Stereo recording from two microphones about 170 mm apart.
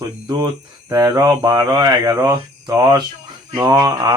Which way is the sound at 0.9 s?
20° right (ahead or behind).